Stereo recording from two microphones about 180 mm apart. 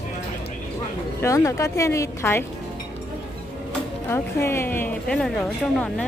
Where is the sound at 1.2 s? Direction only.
15° left (ahead or behind).